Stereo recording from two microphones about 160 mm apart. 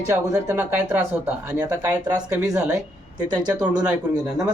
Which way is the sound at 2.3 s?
10° right (ahead or behind).